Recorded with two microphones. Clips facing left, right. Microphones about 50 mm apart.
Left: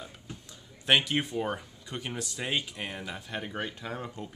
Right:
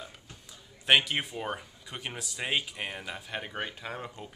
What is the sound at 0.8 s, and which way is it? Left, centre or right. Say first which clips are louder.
Speech: right 1 dB; centre.